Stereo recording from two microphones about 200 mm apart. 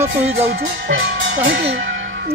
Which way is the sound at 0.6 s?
60° right (ahead or behind).